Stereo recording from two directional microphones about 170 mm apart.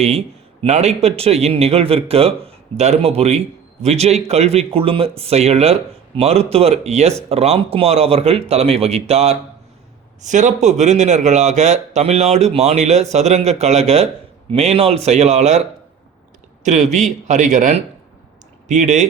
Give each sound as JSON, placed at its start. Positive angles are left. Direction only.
{"t": 0.0, "sound": "speech", "side_deg": -35}
{"t": 16.6, "sound": "a man's voice", "side_deg": -40}